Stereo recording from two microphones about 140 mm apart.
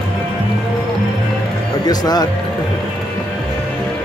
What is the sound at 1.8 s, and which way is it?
Speech, 30° left (ahead or behind).